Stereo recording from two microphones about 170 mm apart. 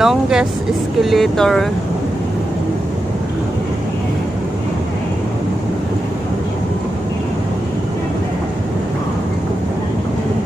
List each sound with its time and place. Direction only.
0.0 s speech: 5° right (ahead or behind)